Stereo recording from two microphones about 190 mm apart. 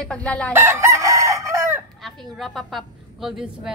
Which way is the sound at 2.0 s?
Centre (ahead or behind).